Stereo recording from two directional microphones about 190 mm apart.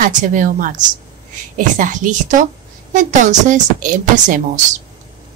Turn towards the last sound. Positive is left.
turn(degrees=-40)  # may be behind; listen again after turning